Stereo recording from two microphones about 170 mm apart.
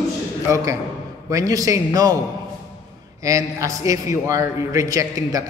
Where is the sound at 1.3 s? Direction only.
20° right (ahead or behind).